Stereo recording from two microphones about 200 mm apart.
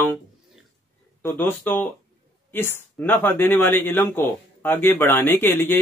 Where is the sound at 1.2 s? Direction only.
10° left (ahead or behind).